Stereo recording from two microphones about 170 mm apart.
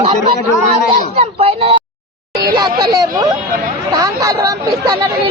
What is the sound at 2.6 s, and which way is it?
Speech, 25° right (ahead or behind).